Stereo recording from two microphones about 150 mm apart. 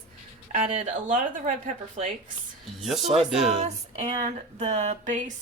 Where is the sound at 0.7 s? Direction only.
40° right (ahead or behind).